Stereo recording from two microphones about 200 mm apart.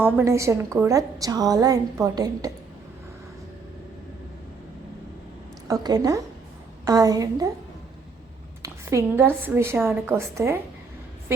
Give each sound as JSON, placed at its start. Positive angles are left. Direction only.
{"t": 0.0, "sound": "a woman's voice", "side_deg": -10}
{"t": 5.6, "sound": "a woman's voice", "side_deg": -20}
{"t": 8.6, "sound": "a woman's voice", "side_deg": -15}